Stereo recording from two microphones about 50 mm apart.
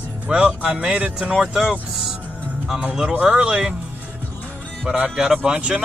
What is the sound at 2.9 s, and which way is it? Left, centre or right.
Speech, centre.